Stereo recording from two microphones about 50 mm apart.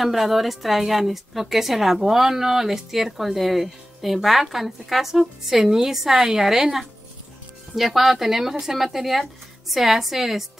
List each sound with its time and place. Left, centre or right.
0.0 s a woman's voice: centre